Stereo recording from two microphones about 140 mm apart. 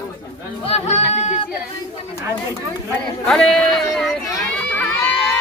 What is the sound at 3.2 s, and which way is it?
Speech, 5° left (ahead or behind).